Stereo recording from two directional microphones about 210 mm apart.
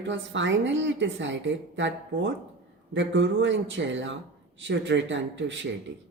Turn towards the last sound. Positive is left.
turn(degrees=-60)  # may be behind; listen again after turning